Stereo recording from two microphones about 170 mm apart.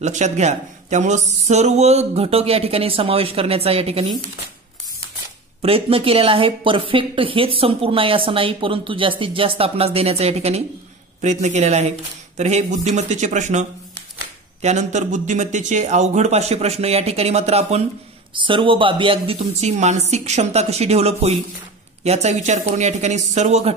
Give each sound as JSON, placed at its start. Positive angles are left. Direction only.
{"t": 0.0, "sound": "speech", "side_deg": -45}
{"t": 5.6, "sound": "speech", "side_deg": -35}